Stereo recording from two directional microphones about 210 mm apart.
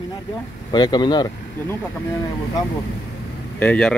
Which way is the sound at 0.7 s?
20° left (ahead or behind).